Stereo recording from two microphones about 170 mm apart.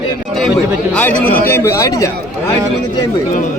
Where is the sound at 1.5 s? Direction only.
15° left (ahead or behind).